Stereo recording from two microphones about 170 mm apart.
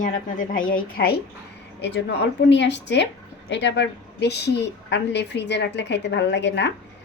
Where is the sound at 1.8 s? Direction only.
90° left.